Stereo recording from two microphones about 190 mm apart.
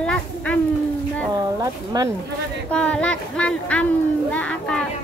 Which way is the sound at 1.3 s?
20° right (ahead or behind).